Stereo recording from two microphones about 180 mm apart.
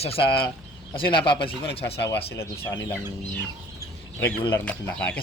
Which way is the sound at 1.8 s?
70° left (ahead or behind).